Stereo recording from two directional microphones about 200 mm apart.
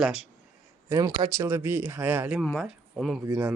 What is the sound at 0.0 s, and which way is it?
Speech, 5° right (ahead or behind).